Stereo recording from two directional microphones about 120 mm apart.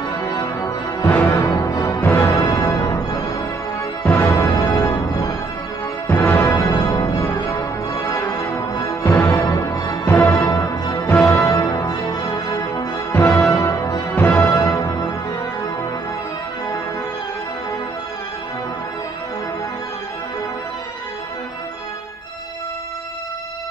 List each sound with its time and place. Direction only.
0.1 s music: 25° left (ahead or behind)
2.0 s music: 15° left (ahead or behind)
2.2 s music: 30° left (ahead or behind)
6.0 s music: 15° left (ahead or behind)
13.1 s music: 20° left (ahead or behind)